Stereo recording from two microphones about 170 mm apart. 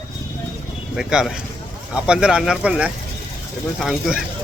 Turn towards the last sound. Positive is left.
turn(degrees=0)  # may be behind; listen again after turning